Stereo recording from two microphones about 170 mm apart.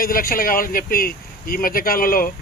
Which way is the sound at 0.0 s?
60° left (ahead or behind).